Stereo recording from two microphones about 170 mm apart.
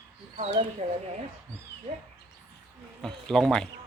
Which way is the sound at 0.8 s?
40° right (ahead or behind).